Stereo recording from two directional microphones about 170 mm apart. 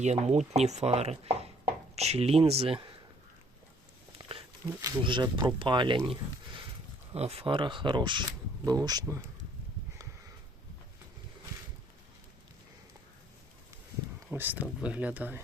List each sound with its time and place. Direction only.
0.0 s speech: 40° right (ahead or behind)
4.8 s speech: 25° right (ahead or behind)
7.1 s speech: 35° right (ahead or behind); by 9.2 s 20° right (ahead or behind)
14.3 s speech: 10° right (ahead or behind)